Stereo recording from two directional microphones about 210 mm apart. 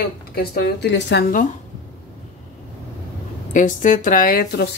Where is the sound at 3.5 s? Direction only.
35° left (ahead or behind).